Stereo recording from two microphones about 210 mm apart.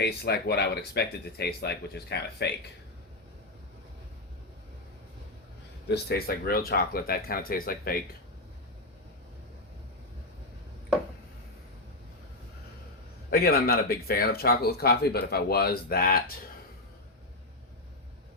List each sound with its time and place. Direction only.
0.0 s speech: 50° left (ahead or behind)
5.9 s speech: 50° left (ahead or behind)
13.3 s speech: 45° left (ahead or behind)